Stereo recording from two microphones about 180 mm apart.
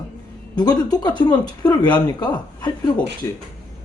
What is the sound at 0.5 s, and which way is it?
Speech, 20° left (ahead or behind).